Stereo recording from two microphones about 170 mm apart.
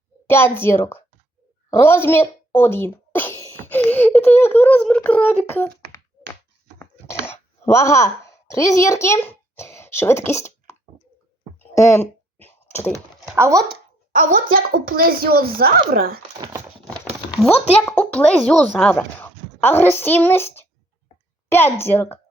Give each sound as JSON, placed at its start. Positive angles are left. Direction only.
{"t": 0.3, "sound": "a woman's voice", "side_deg": 15}
{"t": 6.7, "sound": "a sound", "side_deg": 15}
{"t": 11.8, "sound": "a sound", "side_deg": 15}
{"t": 12.9, "sound": "speech", "side_deg": -15}
{"t": 14.1, "sound": "a child's voice", "side_deg": -50}
{"t": 16.4, "sound": "horse", "side_deg": -15}
{"t": 17.8, "sound": "a woman's voice", "side_deg": 5}